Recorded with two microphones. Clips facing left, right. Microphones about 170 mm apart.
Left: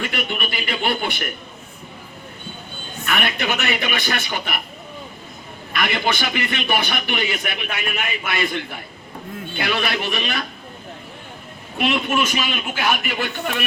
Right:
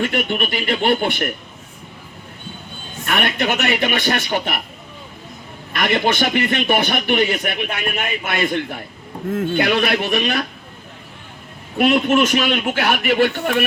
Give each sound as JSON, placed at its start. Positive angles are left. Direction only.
{"t": 0.0, "sound": "a man's voice", "side_deg": -50}
{"t": 3.1, "sound": "a man's voice", "side_deg": -55}
{"t": 5.7, "sound": "a man's voice", "side_deg": -50}
{"t": 11.8, "sound": "a man's voice", "side_deg": -45}